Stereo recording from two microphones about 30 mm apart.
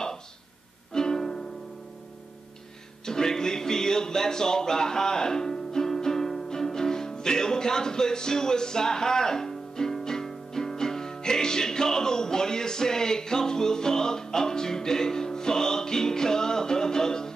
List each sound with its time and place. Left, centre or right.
0.9 s music: centre
3.1 s music: centre